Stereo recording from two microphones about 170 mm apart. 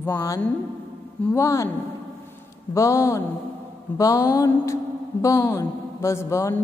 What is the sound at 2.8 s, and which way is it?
A woman's voice, 15° left (ahead or behind).